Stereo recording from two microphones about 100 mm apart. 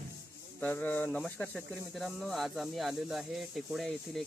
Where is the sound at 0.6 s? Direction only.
15° left (ahead or behind).